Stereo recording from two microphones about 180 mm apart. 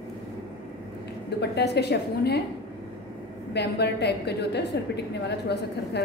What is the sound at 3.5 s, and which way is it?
A woman's voice, 70° left (ahead or behind).